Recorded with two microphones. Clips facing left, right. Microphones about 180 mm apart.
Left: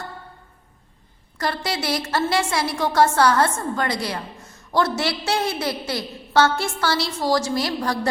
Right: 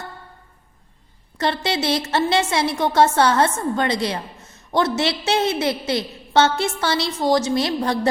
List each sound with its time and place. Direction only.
1.4 s a woman's voice: 25° right (ahead or behind)